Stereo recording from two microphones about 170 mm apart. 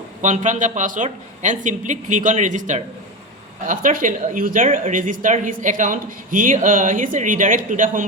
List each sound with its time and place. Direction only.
0.2 s speech: 45° right (ahead or behind)